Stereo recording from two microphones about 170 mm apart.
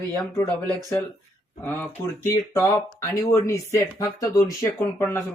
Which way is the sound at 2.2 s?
15° left (ahead or behind).